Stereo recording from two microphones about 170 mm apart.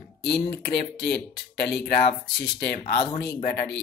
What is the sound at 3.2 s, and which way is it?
Speech, 65° left (ahead or behind).